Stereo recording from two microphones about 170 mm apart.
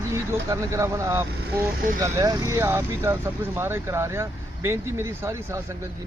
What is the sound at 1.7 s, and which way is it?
Speech, 55° right (ahead or behind).